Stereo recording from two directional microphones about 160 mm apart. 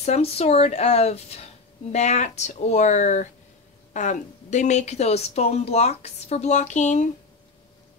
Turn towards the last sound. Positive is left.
turn(degrees=50)  # may be behind; listen again after turning